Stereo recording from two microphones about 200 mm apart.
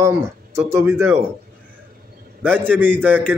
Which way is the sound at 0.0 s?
15° right (ahead or behind).